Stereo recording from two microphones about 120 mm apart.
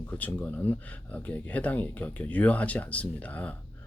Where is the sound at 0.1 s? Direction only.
15° left (ahead or behind).